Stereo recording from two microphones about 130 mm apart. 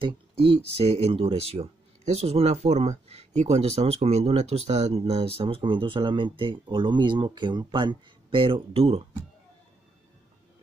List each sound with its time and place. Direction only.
0.0 s speech: 45° right (ahead or behind)